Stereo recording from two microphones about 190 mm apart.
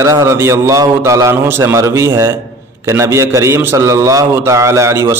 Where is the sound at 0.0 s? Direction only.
15° right (ahead or behind).